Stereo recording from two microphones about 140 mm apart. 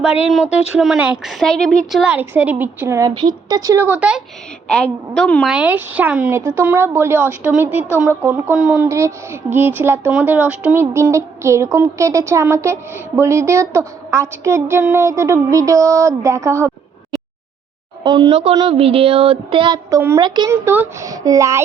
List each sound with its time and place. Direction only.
0.0 s a woman's voice: 10° right (ahead or behind)
3.2 s speech: 30° right (ahead or behind)
3.8 s a woman's voice: 10° right (ahead or behind)
4.7 s a woman's voice: 5° left (ahead or behind); by 16.7 s 20° right (ahead or behind)
18.0 s a woman's voice: 35° right (ahead or behind)
19.9 s speech: 20° right (ahead or behind)
20.2 s a woman's voice: 30° right (ahead or behind)
20.5 s speech: 20° right (ahead or behind)